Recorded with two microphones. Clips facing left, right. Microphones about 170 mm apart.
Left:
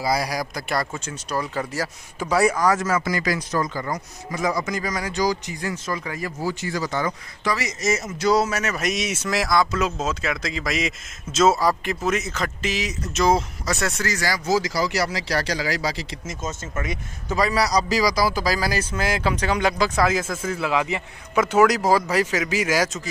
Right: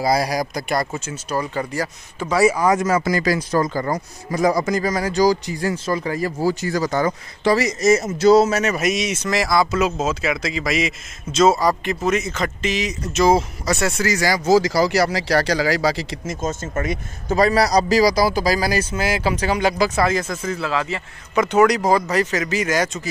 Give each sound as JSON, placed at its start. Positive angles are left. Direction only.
{"t": 0.0, "sound": "speech", "side_deg": -40}
{"t": 0.3, "sound": "speech", "side_deg": -20}
{"t": 2.6, "sound": "speech", "side_deg": -20}
{"t": 3.0, "sound": "speech", "side_deg": -35}
{"t": 8.1, "sound": "speech", "side_deg": -25}
{"t": 8.7, "sound": "speech", "side_deg": -5}
{"t": 14.4, "sound": "speech", "side_deg": -35}
{"t": 15.0, "sound": "speech", "side_deg": -65}
{"t": 16.4, "sound": "speech", "side_deg": -45}
{"t": 17.8, "sound": "speech", "side_deg": -35}
{"t": 21.4, "sound": "speech", "side_deg": 5}